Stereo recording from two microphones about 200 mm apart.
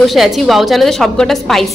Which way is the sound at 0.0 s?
Centre (ahead or behind).